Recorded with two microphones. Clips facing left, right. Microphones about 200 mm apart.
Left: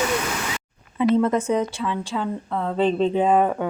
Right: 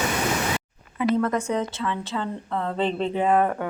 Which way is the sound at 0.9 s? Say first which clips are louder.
Left 4 dB; 20° left (ahead or behind).